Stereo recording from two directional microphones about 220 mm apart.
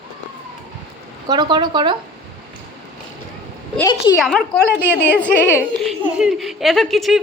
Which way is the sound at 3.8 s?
15° left (ahead or behind).